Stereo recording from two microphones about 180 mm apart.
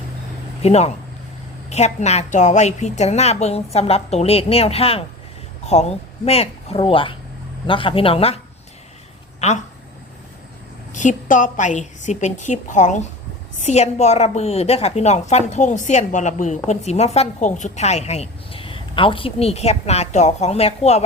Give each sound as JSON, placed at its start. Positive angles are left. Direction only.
{"t": 0.6, "sound": "a woman's voice", "side_deg": 35}
{"t": 10.9, "sound": "a woman's voice", "side_deg": 45}